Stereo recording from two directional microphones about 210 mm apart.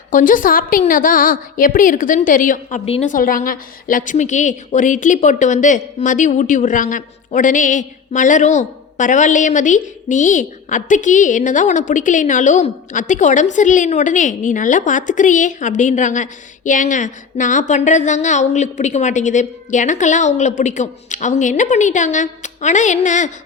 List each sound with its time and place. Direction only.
0.1 s a woman's voice: 40° left (ahead or behind)